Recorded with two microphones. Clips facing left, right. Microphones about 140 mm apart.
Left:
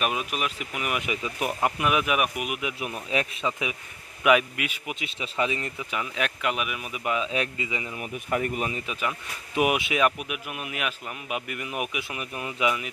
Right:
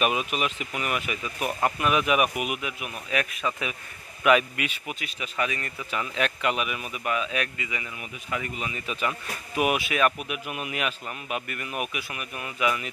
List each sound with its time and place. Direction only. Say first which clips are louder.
0.0 s speech: right 2 dB; centre (ahead or behind)
1.0 s a man's voice: left 1 dB; 20° left (ahead or behind); by 2.6 s centre (ahead or behind)
2.8 s speech: left 1 dB; 25° left (ahead or behind)
4.2 s a man's voice: even; 10° left (ahead or behind)
5.0 s speech: left 2 dB; 25° left (ahead or behind)
5.9 s a man's voice: right 3 dB; 10° left (ahead or behind)
7.1 s speech: left 1 dB; 25° left (ahead or behind)
8.3 s speech: left 5 dB; 45° left (ahead or behind)
9.6 s a man's voice: left 1 dB; 20° left (ahead or behind)